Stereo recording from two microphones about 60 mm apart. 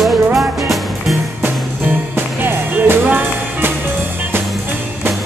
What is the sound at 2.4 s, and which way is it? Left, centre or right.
Music, right.